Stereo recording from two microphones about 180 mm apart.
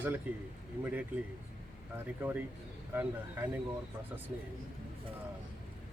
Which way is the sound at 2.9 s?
10° right (ahead or behind).